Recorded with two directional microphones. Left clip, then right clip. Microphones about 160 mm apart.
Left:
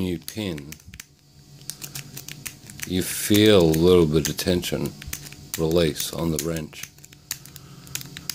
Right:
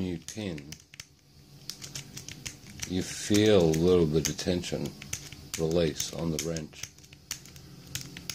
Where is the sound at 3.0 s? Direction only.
35° left (ahead or behind).